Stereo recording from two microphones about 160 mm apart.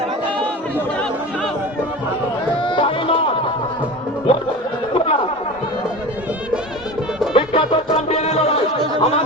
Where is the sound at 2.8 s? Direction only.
35° left (ahead or behind).